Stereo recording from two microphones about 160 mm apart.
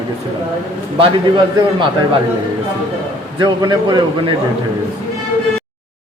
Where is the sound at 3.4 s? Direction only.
25° right (ahead or behind).